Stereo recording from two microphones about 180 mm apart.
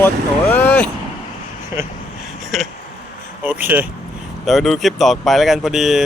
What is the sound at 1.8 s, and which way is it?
Speech, 15° right (ahead or behind).